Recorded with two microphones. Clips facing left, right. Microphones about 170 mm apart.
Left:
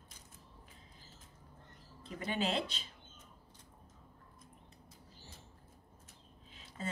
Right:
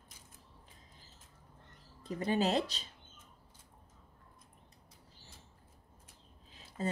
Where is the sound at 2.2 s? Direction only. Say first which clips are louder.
Right 5 dB; 40° right (ahead or behind).